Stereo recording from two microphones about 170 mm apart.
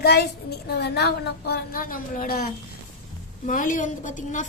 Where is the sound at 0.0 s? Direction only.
70° left (ahead or behind).